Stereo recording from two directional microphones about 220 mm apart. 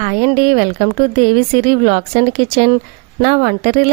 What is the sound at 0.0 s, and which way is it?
Speech, 35° right (ahead or behind).